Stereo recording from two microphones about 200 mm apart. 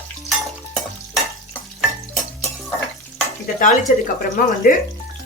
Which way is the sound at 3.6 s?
40° left (ahead or behind).